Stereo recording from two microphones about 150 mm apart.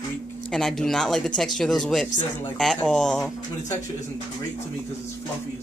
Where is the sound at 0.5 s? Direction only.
Centre (ahead or behind).